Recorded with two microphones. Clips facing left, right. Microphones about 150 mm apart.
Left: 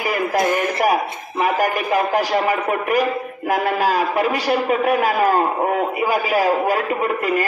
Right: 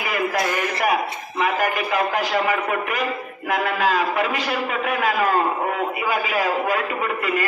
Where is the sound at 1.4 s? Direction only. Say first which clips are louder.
Left 3 dB; 45° left (ahead or behind).